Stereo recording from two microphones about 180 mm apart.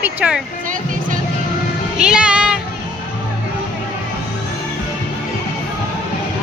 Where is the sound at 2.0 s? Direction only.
5° right (ahead or behind).